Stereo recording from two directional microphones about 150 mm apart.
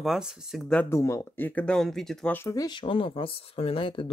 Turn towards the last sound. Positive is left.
turn(degrees=35)  # may be behind; listen again after turning